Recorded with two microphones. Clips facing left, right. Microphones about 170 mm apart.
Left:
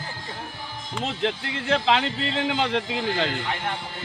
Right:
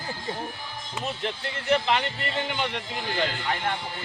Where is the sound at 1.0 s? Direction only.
90° left.